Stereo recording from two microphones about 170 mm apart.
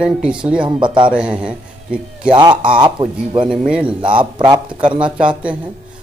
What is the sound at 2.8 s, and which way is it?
Speech, 30° right (ahead or behind).